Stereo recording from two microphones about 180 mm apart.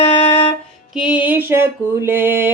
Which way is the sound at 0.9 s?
5° right (ahead or behind).